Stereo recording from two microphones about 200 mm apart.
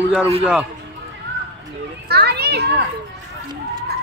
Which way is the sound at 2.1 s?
55° right (ahead or behind).